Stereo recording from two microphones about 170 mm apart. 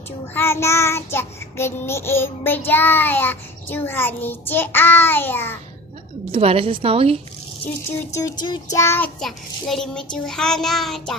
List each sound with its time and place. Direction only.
0.3 s child singing: 15° left (ahead or behind)
6.3 s a woman's voice: 35° right (ahead or behind)
8.1 s speech: 20° left (ahead or behind)
8.7 s child singing: 15° left (ahead or behind)
9.2 s a child's voice: centre (ahead or behind)